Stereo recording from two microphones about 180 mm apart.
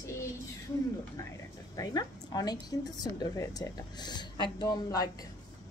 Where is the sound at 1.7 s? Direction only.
20° left (ahead or behind).